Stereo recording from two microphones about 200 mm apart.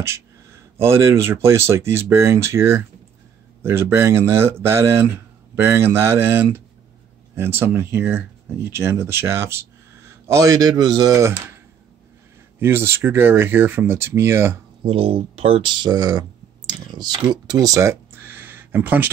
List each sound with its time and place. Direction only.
0.0 s speech: 15° right (ahead or behind)
12.5 s speech: 10° right (ahead or behind)
14.8 s speech: 30° right (ahead or behind); by 19.0 s 10° right (ahead or behind)